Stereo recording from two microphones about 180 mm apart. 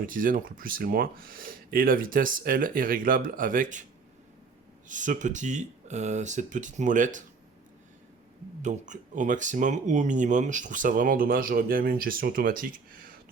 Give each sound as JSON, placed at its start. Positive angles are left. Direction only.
{"t": 0.1, "sound": "speech", "side_deg": -50}
{"t": 4.9, "sound": "speech", "side_deg": -45}
{"t": 8.6, "sound": "speech", "side_deg": -40}